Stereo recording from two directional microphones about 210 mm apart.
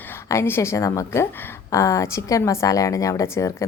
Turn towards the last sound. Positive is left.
turn(degrees=15)  # may be behind; listen again after turning